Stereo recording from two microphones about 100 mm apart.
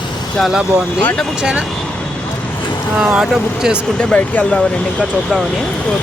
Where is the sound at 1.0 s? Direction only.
15° left (ahead or behind).